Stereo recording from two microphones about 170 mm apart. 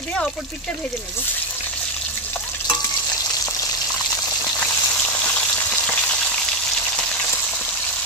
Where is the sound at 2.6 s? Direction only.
20° left (ahead or behind).